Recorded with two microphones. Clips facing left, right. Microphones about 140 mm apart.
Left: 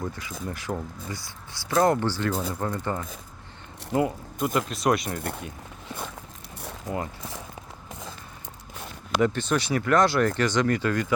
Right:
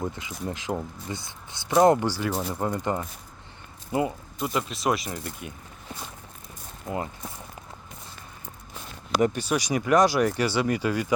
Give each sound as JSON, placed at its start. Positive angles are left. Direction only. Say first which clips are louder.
{"t": 0.0, "sound": "speech", "louder": "right 2 dB", "side_deg": -20}
{"t": 3.9, "sound": "speech", "louder": "left 2 dB", "side_deg": -5}
{"t": 5.0, "sound": "speech", "louder": "left 3 dB", "side_deg": 55}
{"t": 9.2, "sound": "speech", "louder": "left 1 dB", "side_deg": -10}